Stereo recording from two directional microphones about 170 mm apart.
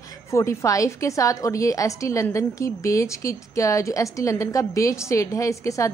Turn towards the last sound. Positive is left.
turn(degrees=20)  # may be behind; listen again after turning